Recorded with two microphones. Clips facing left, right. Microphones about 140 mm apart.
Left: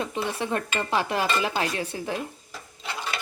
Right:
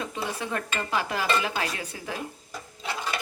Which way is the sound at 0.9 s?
25° left (ahead or behind).